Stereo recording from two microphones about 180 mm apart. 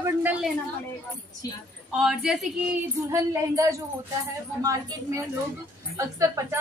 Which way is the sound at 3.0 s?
15° right (ahead or behind).